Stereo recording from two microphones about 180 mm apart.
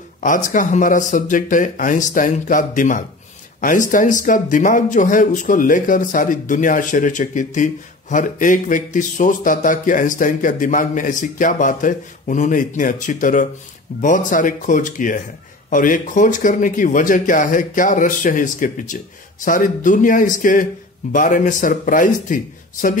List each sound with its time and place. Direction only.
0.2 s speech: 45° left (ahead or behind)